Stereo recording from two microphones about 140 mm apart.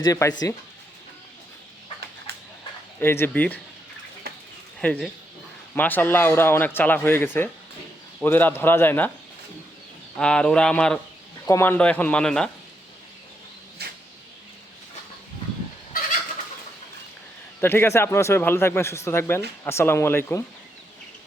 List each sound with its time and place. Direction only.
0.0 s speech: 20° left (ahead or behind)
3.0 s speech: 15° left (ahead or behind)
4.8 s speech: 5° left (ahead or behind)
10.2 s speech: 5° left (ahead or behind)
11.4 s speech: 20° left (ahead or behind)
17.6 s speech: 15° left (ahead or behind)